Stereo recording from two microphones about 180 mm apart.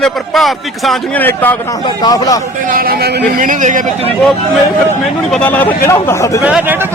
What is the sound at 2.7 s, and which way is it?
A man's voice, 55° right (ahead or behind).